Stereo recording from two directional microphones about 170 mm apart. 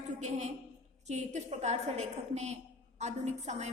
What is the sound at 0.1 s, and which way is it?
A woman's voice, 45° right (ahead or behind).